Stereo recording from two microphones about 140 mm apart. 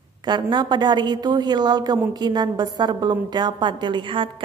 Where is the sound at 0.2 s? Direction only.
30° right (ahead or behind).